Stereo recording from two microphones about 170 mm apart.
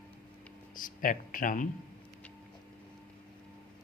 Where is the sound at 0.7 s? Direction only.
50° left (ahead or behind).